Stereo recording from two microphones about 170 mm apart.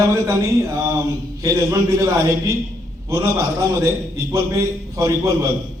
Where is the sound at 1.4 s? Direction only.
20° right (ahead or behind).